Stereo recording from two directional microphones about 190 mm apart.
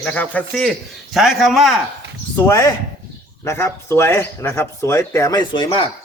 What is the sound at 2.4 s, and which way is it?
Speech, 15° left (ahead or behind).